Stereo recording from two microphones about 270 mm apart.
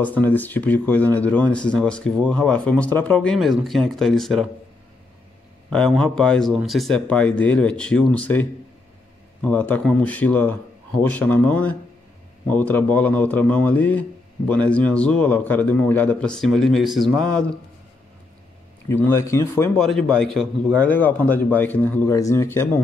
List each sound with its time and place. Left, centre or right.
0.0 s speech: centre
5.7 s speech: centre
18.9 s a man's voice: centre